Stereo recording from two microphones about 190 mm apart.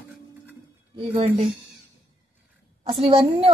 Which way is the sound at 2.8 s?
30° right (ahead or behind).